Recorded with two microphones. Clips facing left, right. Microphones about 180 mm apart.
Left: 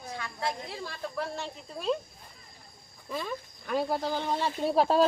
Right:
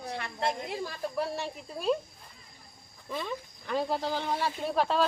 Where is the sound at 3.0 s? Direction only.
5° left (ahead or behind).